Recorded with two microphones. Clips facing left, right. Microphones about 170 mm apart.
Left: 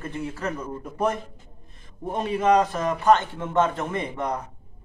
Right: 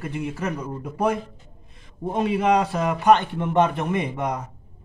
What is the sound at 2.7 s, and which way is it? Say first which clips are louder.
A man's voice: right 2 dB; 15° right (ahead or behind).